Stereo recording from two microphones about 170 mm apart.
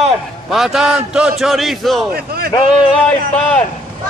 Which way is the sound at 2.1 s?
65° right (ahead or behind).